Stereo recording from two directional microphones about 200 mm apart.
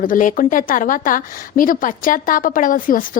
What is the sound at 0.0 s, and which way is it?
A woman's voice, 40° left (ahead or behind).